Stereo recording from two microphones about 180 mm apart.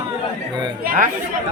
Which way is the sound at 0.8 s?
50° right (ahead or behind).